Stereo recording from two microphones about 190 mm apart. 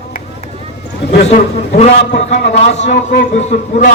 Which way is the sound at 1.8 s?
35° left (ahead or behind).